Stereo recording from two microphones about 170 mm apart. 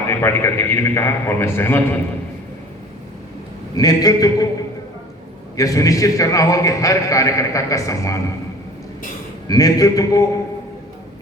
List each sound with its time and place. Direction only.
0.1 s a man's voice: 15° left (ahead or behind)
3.8 s a man's voice: 20° left (ahead or behind)
5.5 s a man's voice: 20° left (ahead or behind)
9.5 s a man's voice: 20° left (ahead or behind)